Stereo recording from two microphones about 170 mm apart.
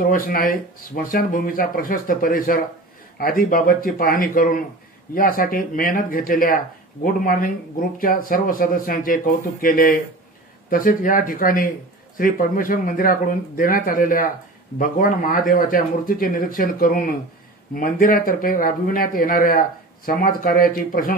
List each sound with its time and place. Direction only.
0.0 s speech: 55° left (ahead or behind)